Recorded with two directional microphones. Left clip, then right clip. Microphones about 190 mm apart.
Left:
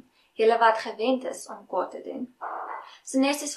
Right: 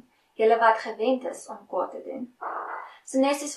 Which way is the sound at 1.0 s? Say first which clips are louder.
Right 1 dB; 20° left (ahead or behind).